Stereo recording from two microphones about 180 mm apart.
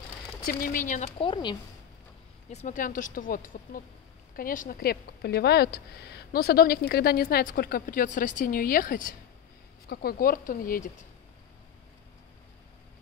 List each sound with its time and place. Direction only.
0.5 s speech: 50° left (ahead or behind); by 1.6 s 25° left (ahead or behind)
2.5 s speech: 45° left (ahead or behind)